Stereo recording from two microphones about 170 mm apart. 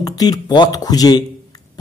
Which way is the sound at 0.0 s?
20° left (ahead or behind).